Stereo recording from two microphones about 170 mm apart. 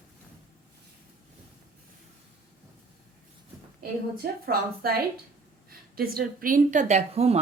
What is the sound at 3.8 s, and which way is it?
A woman's voice, 60° right (ahead or behind).